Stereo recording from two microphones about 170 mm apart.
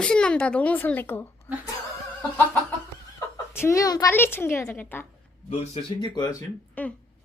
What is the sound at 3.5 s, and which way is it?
A woman's voice, 15° left (ahead or behind).